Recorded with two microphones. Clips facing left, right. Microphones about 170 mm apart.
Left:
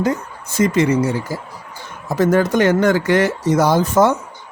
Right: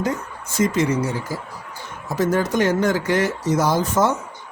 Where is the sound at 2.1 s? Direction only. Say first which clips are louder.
Left 5 dB; 60° left (ahead or behind).